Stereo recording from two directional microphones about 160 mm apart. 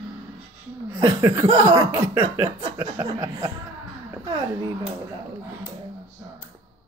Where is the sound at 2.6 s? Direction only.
30° right (ahead or behind).